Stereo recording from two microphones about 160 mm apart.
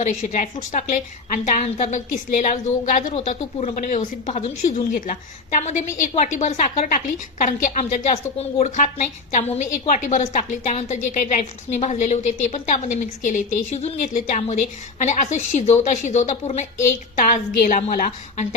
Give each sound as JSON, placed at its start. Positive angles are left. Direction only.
{"t": 0.0, "sound": "a woman's voice", "side_deg": 55}
{"t": 3.8, "sound": "a woman's voice", "side_deg": 55}
{"t": 4.9, "sound": "a woman's voice", "side_deg": 55}